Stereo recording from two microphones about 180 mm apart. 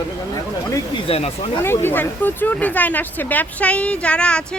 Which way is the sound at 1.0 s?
35° left (ahead or behind).